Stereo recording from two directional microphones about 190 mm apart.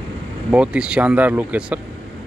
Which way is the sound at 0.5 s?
5° right (ahead or behind).